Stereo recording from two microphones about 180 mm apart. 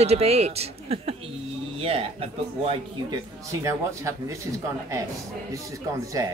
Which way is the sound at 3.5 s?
15° right (ahead or behind).